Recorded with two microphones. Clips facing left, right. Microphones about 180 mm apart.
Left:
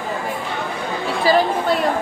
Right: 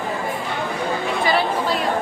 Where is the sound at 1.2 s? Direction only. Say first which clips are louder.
Left 5 dB; 35° left (ahead or behind).